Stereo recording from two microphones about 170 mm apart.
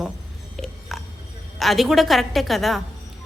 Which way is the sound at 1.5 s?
Centre (ahead or behind).